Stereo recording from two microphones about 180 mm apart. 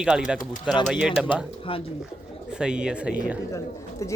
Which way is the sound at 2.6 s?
5° right (ahead or behind).